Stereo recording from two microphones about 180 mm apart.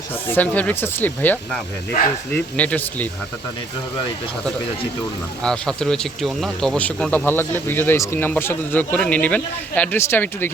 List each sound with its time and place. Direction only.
0.3 s speech: 10° left (ahead or behind)
5.4 s speech: 5° left (ahead or behind)